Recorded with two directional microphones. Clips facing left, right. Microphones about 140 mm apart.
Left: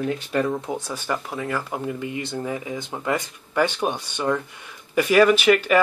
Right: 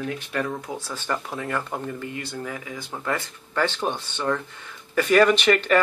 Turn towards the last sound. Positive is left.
turn(degrees=5)  # may be behind; listen again after turning